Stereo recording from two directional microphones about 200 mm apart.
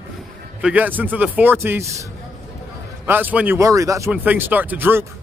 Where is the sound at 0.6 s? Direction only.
10° right (ahead or behind).